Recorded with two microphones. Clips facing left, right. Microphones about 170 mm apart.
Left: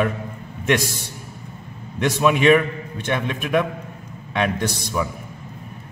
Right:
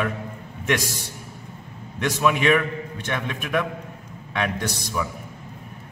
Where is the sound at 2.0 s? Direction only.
25° left (ahead or behind).